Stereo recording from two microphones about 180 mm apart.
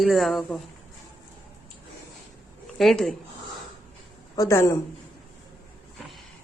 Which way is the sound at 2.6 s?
Centre (ahead or behind).